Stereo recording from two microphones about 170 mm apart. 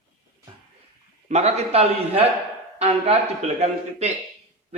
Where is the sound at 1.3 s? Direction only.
40° right (ahead or behind).